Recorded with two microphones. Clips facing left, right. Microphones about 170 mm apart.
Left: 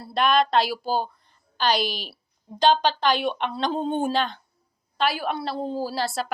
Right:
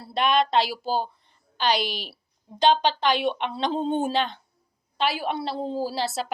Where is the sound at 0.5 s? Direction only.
50° left (ahead or behind).